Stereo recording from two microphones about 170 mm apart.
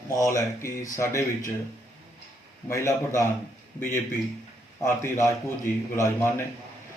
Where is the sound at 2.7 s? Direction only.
15° left (ahead or behind).